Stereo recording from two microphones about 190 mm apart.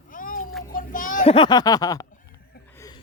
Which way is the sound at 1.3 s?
25° left (ahead or behind).